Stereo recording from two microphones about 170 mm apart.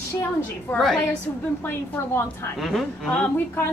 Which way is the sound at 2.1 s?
15° left (ahead or behind).